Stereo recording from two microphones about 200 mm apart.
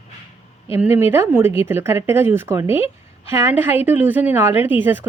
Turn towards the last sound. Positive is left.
turn(degrees=-10)  # may be behind; listen again after turning